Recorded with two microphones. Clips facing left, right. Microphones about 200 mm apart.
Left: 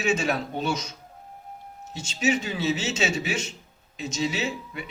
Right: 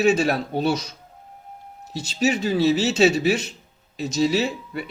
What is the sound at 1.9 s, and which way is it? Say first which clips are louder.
Speech: right 3 dB; 35° right (ahead or behind).